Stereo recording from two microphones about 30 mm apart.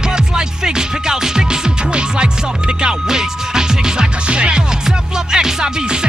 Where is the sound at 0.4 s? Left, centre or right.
Right.